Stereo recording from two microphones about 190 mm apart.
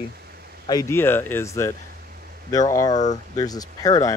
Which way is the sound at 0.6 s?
15° left (ahead or behind).